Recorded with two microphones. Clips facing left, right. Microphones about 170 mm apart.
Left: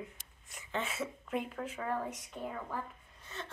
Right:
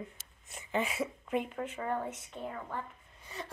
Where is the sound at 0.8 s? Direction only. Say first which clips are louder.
Right 3 dB; 10° right (ahead or behind).